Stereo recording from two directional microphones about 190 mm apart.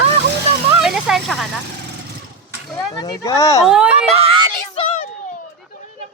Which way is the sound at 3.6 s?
5° right (ahead or behind).